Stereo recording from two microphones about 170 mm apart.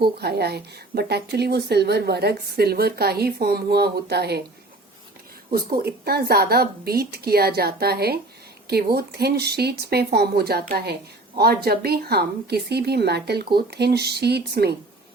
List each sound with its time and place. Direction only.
0.0 s speech: 70° right (ahead or behind)
5.5 s a woman's voice: 65° right (ahead or behind)